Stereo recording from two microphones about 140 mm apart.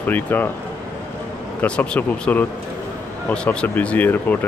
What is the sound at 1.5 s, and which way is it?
Speech, 10° left (ahead or behind).